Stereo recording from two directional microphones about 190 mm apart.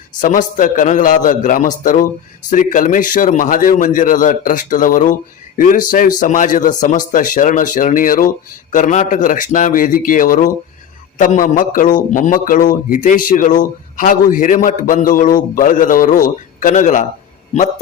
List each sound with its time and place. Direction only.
0.2 s a man's voice: 45° left (ahead or behind)